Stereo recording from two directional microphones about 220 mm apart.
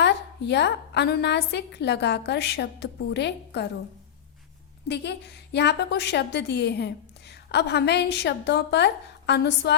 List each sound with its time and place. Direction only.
0.0 s a woman's voice: 50° left (ahead or behind)
4.9 s a woman's voice: 50° left (ahead or behind)